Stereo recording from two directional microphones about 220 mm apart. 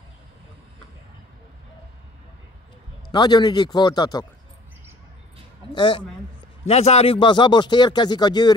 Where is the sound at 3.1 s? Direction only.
20° left (ahead or behind).